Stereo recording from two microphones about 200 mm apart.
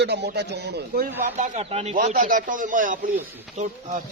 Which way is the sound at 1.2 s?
35° right (ahead or behind).